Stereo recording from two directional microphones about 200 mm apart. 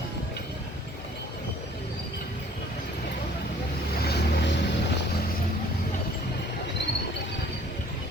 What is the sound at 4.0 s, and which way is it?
Vehicle, 50° left (ahead or behind).